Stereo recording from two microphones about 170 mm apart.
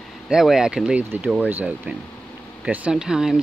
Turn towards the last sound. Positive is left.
turn(degrees=-5)  # may be behind; listen again after turning